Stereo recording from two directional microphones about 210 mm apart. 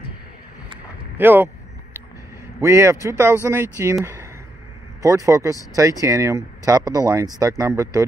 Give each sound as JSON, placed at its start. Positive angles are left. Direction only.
{"t": 1.1, "sound": "speech", "side_deg": -10}
{"t": 2.6, "sound": "speech", "side_deg": -15}
{"t": 4.0, "sound": "a sound", "side_deg": -10}
{"t": 5.0, "sound": "speech", "side_deg": -15}